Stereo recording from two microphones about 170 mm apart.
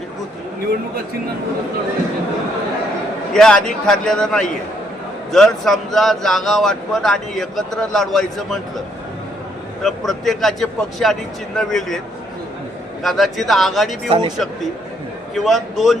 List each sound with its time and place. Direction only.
3.3 s speech: 5° left (ahead or behind)
9.8 s speech: centre (ahead or behind)
13.0 s speech: centre (ahead or behind)
14.1 s speech: 25° right (ahead or behind)
15.4 s speech: centre (ahead or behind)